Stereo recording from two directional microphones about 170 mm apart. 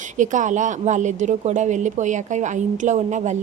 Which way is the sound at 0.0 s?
50° right (ahead or behind).